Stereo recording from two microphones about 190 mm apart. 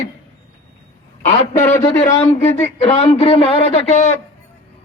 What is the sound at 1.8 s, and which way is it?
Speech, 15° left (ahead or behind).